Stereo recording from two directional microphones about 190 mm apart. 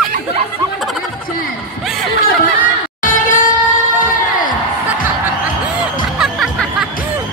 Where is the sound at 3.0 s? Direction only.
45° left (ahead or behind).